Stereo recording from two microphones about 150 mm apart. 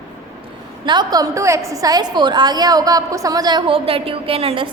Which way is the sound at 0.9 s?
25° right (ahead or behind).